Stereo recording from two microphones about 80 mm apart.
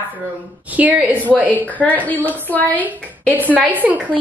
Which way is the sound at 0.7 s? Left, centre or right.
Centre.